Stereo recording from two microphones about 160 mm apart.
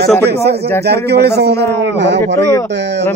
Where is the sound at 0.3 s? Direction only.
90° right.